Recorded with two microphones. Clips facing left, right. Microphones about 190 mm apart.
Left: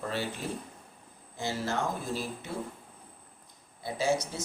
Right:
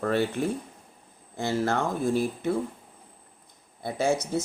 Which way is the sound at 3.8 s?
55° right (ahead or behind).